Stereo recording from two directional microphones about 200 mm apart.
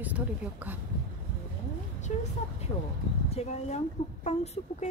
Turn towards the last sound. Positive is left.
turn(degrees=35)  # may be behind; listen again after turning